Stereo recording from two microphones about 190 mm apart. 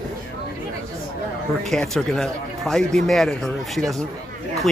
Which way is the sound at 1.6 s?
Centre (ahead or behind).